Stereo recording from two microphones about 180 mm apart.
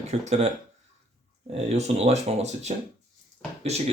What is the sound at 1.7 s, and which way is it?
Speech, 35° right (ahead or behind).